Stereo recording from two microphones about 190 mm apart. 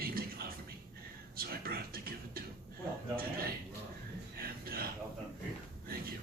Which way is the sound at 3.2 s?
50° right (ahead or behind).